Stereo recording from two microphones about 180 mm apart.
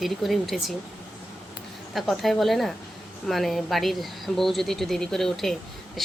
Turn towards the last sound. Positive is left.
turn(degrees=0)  # may be behind; listen again after turning